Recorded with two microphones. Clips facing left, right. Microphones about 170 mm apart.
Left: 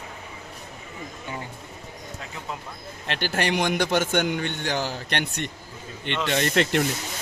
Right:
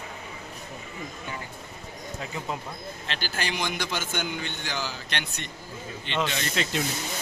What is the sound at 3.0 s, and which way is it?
A man's voice, 60° left (ahead or behind).